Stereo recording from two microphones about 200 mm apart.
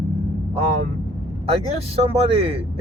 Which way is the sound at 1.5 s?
30° right (ahead or behind).